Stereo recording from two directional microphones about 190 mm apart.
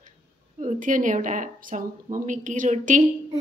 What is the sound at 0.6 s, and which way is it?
Speech, 40° right (ahead or behind).